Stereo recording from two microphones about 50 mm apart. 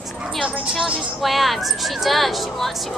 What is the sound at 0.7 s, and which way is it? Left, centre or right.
A woman's voice, centre.